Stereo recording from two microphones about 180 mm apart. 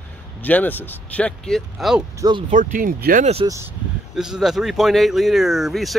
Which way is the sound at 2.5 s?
45° right (ahead or behind).